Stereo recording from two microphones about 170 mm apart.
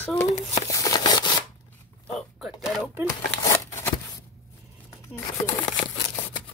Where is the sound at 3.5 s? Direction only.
15° left (ahead or behind).